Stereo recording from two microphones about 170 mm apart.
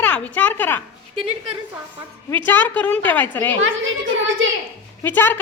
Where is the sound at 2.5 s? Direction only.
10° left (ahead or behind).